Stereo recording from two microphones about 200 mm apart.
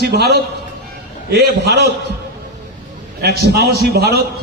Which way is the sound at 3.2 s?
55° right (ahead or behind).